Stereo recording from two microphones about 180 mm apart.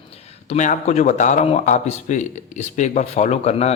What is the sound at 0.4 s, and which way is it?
A man's voice, 40° left (ahead or behind).